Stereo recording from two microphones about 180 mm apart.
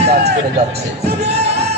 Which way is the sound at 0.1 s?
65° right (ahead or behind).